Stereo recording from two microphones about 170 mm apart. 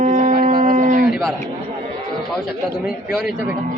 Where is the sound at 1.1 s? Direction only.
Centre (ahead or behind).